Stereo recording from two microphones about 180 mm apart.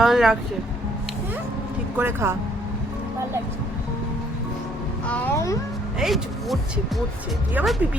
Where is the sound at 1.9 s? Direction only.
10° right (ahead or behind).